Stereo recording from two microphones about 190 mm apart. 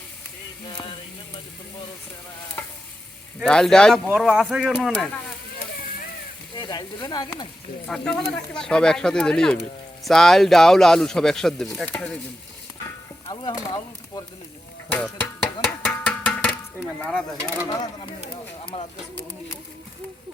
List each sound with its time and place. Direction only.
3.4 s speech: 5° left (ahead or behind)
6.6 s speech: 20° left (ahead or behind)
7.9 s speech: centre (ahead or behind)
13.2 s speech: 25° left (ahead or behind)
14.8 s speech: 5° left (ahead or behind)
15.6 s a sound: 5° left (ahead or behind)
18.3 s bird: 30° left (ahead or behind)